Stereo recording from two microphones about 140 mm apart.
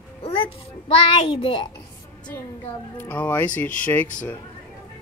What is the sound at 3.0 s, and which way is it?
Speech, 15° left (ahead or behind).